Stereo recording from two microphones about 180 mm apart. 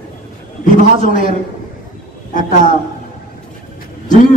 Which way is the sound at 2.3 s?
45° left (ahead or behind).